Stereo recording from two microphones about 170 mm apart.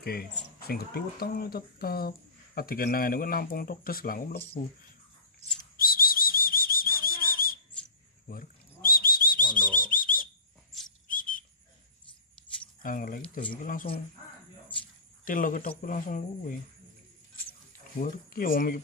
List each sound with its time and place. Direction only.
0.0 s speech: 65° left (ahead or behind)
5.8 s whistle: 55° left (ahead or behind)
8.3 s bird: 55° left (ahead or behind)
9.8 s whistle: 55° left (ahead or behind)
12.8 s speech: 55° left (ahead or behind)
15.2 s speech: 55° left (ahead or behind)
17.5 s keys jangling: 55° left (ahead or behind)